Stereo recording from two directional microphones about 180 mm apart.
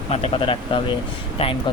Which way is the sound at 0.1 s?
35° left (ahead or behind).